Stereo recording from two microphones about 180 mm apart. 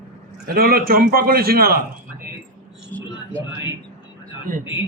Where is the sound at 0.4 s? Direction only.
55° right (ahead or behind).